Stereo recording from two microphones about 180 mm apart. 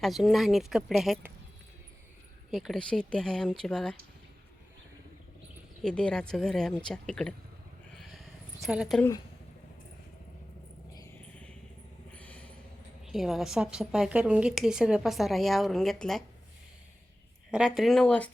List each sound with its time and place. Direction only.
0.0 s a woman's voice: centre (ahead or behind)
2.5 s a woman's voice: centre (ahead or behind)
5.8 s a woman's voice: 5° left (ahead or behind)
7.9 s a sound: centre (ahead or behind)
12.1 s vehicle: 5° left (ahead or behind)
13.1 s a woman's voice: centre (ahead or behind)
17.5 s a woman's voice: 5° right (ahead or behind)